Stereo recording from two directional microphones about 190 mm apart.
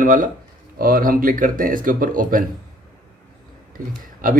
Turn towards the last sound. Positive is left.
turn(degrees=-45)  # may be behind; listen again after turning